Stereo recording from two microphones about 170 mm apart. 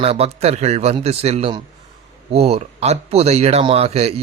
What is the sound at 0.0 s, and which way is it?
A man's voice, 35° right (ahead or behind).